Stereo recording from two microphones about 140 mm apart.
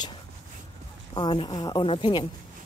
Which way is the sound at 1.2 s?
35° left (ahead or behind).